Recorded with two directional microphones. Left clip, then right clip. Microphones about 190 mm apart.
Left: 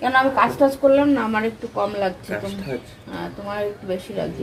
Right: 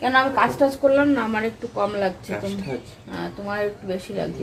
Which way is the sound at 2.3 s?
15° right (ahead or behind).